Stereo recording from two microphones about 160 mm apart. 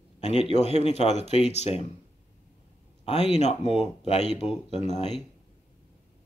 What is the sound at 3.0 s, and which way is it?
Speech, 45° left (ahead or behind).